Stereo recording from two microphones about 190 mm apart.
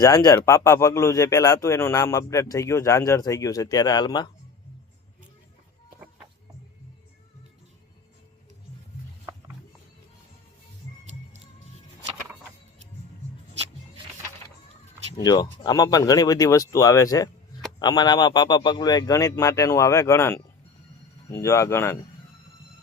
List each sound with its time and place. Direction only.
0.0 s speech: 20° left (ahead or behind)
15.2 s a man's voice: 20° left (ahead or behind)